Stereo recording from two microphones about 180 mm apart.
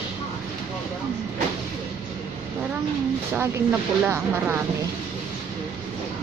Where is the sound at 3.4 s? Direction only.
15° right (ahead or behind).